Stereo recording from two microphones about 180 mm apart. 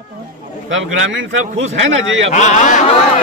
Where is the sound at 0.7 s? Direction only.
90° right.